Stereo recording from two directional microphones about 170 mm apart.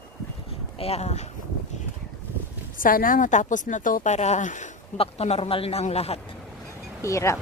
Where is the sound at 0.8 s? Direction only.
40° left (ahead or behind).